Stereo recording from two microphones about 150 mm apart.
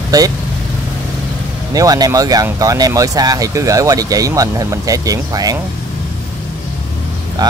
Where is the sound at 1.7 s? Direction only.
25° right (ahead or behind).